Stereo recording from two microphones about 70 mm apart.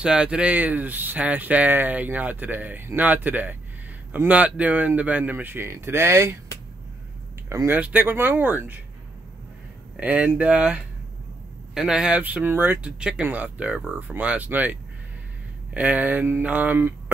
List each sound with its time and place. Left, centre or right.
0.0 s speech: centre; by 6.3 s right
7.6 s speech: right
9.9 s speech: centre
12.2 s speech: right